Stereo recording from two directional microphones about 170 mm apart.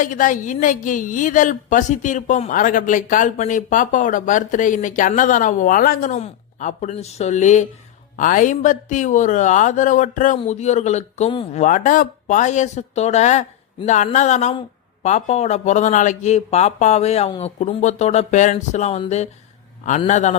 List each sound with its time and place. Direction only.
0.0 s a woman's voice: 50° left (ahead or behind)
11.6 s a woman's voice: 50° left (ahead or behind)